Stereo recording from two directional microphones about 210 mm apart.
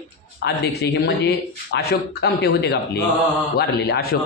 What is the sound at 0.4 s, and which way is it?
A man's voice, 50° left (ahead or behind).